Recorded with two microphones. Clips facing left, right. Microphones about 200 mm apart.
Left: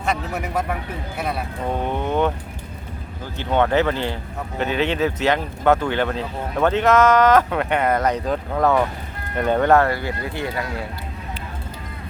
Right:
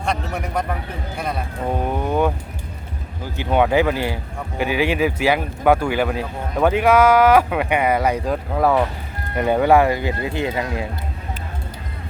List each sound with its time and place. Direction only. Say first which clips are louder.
0.0 s a man's voice: even; 5° left (ahead or behind)
1.7 s vehicle: right 1 dB; 5° right (ahead or behind)
3.3 s speech: right 2 dB; 10° right (ahead or behind)